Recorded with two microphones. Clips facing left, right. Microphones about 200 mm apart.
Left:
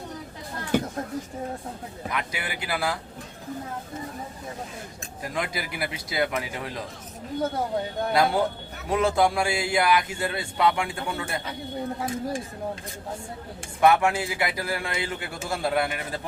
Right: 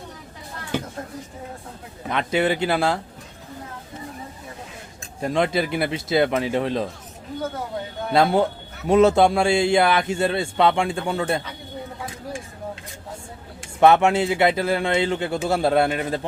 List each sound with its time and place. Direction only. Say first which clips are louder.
2.0 s a man's voice: right 11 dB; 25° right (ahead or behind)
5.2 s a man's voice: right 10 dB; 25° right (ahead or behind)
8.1 s a man's voice: right 5 dB; 25° right (ahead or behind)
13.8 s a man's voice: right 5 dB; 25° right (ahead or behind)